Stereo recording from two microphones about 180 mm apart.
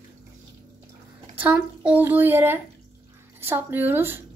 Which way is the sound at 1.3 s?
10° right (ahead or behind).